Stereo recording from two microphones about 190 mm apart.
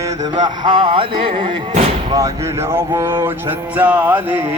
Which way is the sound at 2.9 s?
15° right (ahead or behind).